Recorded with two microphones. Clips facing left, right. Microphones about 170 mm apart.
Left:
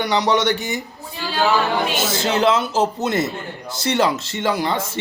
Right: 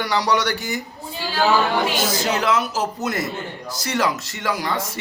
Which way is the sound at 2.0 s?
25° left (ahead or behind).